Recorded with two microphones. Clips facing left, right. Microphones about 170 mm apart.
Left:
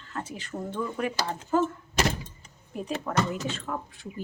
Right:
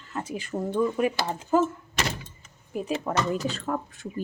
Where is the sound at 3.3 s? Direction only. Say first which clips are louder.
Right 4 dB; 35° right (ahead or behind).